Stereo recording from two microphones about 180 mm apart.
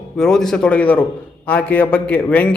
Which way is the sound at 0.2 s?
5° left (ahead or behind).